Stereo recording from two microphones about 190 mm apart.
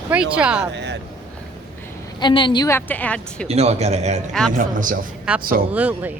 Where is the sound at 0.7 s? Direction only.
65° right (ahead or behind).